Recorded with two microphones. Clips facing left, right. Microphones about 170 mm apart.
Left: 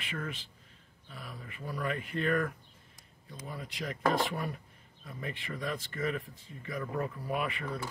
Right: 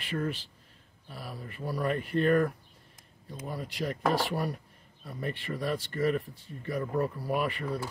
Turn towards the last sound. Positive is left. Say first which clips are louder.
# right 4 dB
turn(degrees=-35)  # may be behind; listen again after turning